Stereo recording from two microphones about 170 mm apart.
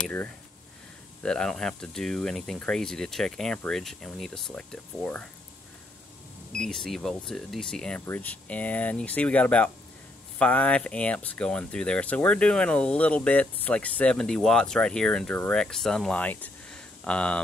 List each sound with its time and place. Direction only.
0.0 s speech: 10° left (ahead or behind)
6.5 s speech: 5° left (ahead or behind)